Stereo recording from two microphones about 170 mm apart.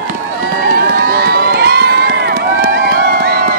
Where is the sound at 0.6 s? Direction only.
60° right (ahead or behind).